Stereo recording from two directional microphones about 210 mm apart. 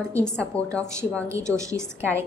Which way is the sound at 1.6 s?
15° right (ahead or behind).